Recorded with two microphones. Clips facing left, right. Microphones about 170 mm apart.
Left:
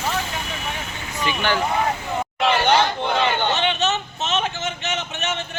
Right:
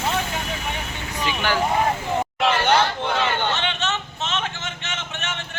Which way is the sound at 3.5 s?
20° left (ahead or behind).